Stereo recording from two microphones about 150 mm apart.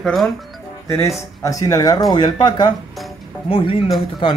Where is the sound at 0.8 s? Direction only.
20° left (ahead or behind).